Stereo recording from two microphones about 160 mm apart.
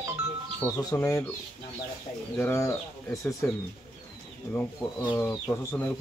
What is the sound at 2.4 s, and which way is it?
Speech, 15° left (ahead or behind).